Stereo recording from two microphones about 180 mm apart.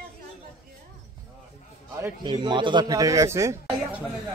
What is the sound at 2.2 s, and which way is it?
Speech, 25° right (ahead or behind).